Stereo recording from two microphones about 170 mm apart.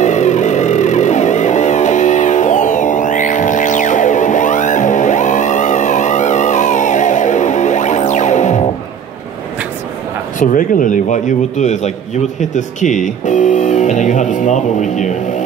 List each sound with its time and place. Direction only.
0.0 s music: 45° left (ahead or behind)
10.4 s speech: 50° left (ahead or behind)